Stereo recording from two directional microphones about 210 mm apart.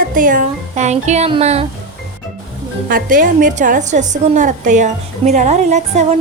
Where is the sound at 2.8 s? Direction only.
40° right (ahead or behind).